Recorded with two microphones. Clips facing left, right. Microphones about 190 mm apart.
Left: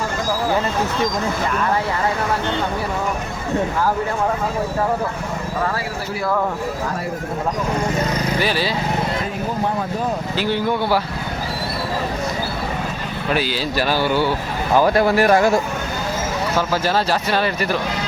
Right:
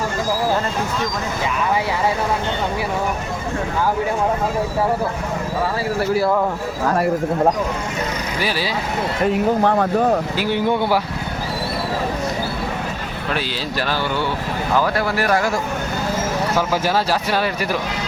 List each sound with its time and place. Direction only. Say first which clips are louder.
8.4 s speech: even; 10° right (ahead or behind)
10.3 s speech: right 1 dB; 10° right (ahead or behind)
13.3 s speech: left 4 dB; 10° left (ahead or behind)
14.8 s speech: left 6 dB; 20° left (ahead or behind)
16.6 s speech: left 1 dB; 10° right (ahead or behind)